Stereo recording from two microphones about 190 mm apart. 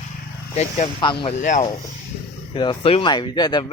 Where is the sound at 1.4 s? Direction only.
40° left (ahead or behind).